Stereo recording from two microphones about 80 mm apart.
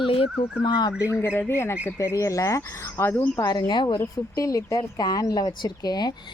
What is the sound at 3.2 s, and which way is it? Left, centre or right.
Speech, left.